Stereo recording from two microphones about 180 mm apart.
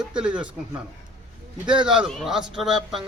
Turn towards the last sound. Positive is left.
turn(degrees=0)  # may be behind; listen again after turning